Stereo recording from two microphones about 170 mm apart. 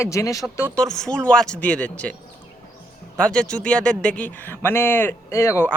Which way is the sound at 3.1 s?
5° left (ahead or behind).